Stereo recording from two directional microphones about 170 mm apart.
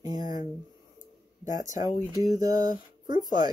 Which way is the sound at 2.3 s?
20° right (ahead or behind).